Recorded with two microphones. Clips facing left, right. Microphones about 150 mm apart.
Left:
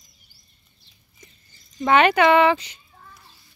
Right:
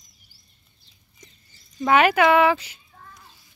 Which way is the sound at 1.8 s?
5° right (ahead or behind).